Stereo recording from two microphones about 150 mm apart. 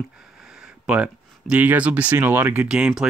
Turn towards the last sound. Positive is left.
turn(degrees=-5)  # may be behind; listen again after turning